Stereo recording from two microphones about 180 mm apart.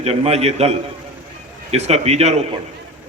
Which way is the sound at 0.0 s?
35° right (ahead or behind).